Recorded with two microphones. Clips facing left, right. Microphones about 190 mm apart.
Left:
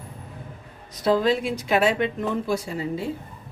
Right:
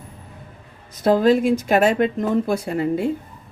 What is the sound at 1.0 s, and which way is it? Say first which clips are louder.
Speech: right 5 dB; 50° right (ahead or behind).